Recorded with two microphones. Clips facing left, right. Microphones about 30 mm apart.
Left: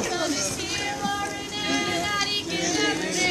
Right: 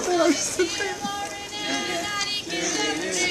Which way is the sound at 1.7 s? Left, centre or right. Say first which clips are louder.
Left 2 dB; centre.